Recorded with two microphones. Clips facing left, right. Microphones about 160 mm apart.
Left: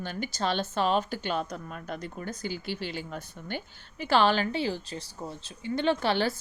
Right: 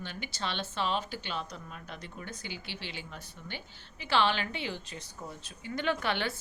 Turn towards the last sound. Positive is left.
turn(degrees=35)  # may be behind; listen again after turning